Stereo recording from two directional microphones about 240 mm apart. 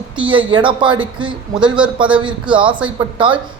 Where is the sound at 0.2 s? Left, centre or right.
Right.